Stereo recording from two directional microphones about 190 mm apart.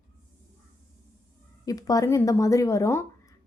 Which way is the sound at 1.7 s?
20° left (ahead or behind).